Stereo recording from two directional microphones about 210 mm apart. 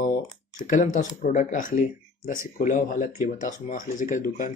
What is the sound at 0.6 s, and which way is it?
Speech, 35° left (ahead or behind).